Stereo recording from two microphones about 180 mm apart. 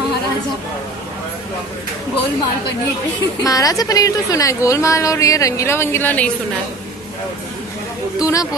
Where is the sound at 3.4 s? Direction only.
20° left (ahead or behind).